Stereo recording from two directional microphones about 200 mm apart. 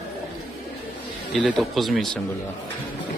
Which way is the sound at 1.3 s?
Centre (ahead or behind).